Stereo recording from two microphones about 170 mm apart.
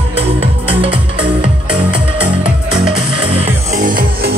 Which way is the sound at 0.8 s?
30° right (ahead or behind).